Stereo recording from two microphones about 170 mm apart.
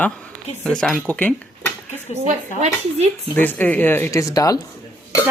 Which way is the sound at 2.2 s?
40° right (ahead or behind).